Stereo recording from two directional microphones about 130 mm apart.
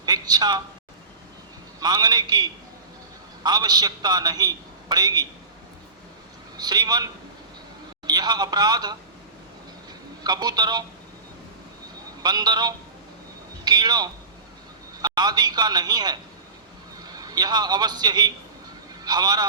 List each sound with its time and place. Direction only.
0.0 s a woman's voice: 30° right (ahead or behind)
1.8 s a man's voice: 35° right (ahead or behind)
6.6 s a man's voice: 30° right (ahead or behind)
10.2 s a man's voice: 30° right (ahead or behind)
12.2 s a man's voice: 30° right (ahead or behind)